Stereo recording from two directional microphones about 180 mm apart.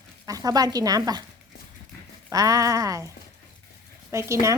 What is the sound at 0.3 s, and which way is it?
Speech, 20° right (ahead or behind).